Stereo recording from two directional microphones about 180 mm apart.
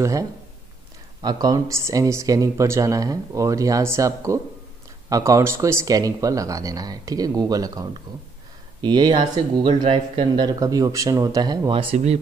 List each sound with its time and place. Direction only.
0.0 s speech: 15° right (ahead or behind); by 12.2 s 35° right (ahead or behind)